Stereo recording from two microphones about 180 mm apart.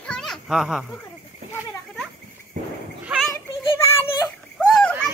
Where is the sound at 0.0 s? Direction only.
5° left (ahead or behind).